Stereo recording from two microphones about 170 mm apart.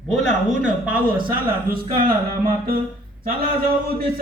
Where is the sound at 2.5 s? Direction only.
55° right (ahead or behind).